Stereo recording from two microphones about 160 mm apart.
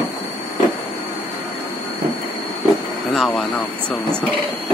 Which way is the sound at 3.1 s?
Centre (ahead or behind).